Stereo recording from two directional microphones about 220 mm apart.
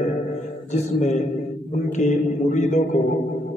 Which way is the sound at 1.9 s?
30° left (ahead or behind).